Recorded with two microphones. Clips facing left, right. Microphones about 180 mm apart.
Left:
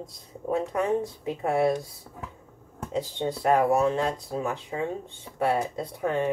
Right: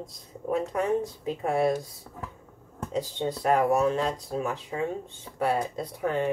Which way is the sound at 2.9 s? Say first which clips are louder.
Left 1 dB; 20° left (ahead or behind).